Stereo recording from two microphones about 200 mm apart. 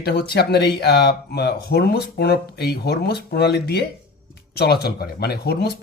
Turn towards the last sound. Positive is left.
turn(degrees=55)  # may be behind; listen again after turning